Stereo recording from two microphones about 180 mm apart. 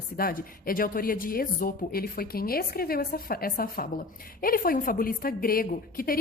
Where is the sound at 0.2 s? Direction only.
55° left (ahead or behind).